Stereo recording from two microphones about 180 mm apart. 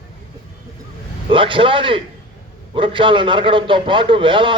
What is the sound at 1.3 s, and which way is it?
A man's voice, 30° right (ahead or behind).